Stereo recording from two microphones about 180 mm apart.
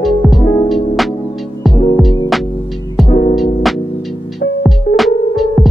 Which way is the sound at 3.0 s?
40° left (ahead or behind).